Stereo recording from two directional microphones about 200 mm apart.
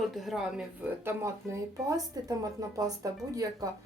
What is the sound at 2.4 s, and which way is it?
A woman's voice, 15° right (ahead or behind).